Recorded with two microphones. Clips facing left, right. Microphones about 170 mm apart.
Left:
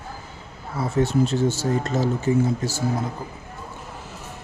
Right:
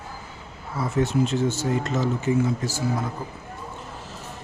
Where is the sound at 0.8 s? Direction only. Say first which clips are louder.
Left 2 dB; 30° left (ahead or behind).